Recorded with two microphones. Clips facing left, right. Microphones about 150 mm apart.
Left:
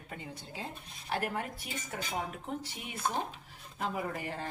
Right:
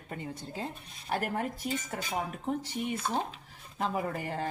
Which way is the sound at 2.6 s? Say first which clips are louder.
Right 4 dB; 40° right (ahead or behind).